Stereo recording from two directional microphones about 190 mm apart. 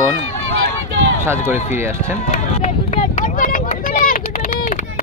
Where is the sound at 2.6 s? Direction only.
35° left (ahead or behind).